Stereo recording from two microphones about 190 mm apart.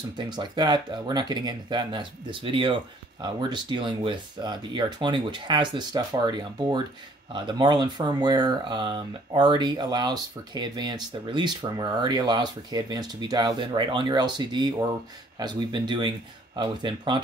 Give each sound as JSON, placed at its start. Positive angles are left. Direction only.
{"t": 0.2, "sound": "speech", "side_deg": -25}